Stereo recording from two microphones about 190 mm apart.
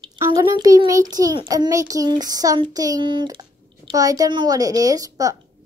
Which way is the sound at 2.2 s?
20° right (ahead or behind).